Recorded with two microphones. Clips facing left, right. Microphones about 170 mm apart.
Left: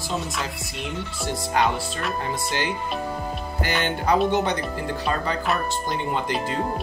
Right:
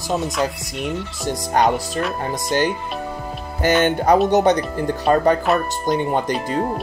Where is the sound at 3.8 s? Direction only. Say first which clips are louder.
Right 3 dB; 45° right (ahead or behind).